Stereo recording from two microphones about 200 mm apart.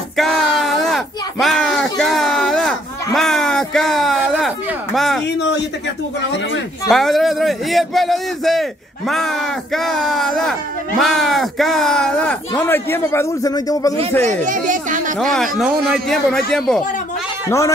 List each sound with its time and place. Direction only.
0.2 s a sound: centre (ahead or behind)
4.9 s a man's voice: centre (ahead or behind)
6.9 s a man's voice: centre (ahead or behind); by 13.9 s 15° left (ahead or behind)
14.2 s speech: 40° right (ahead or behind)
15.1 s a man's voice: centre (ahead or behind)
17.5 s speech: 15° left (ahead or behind)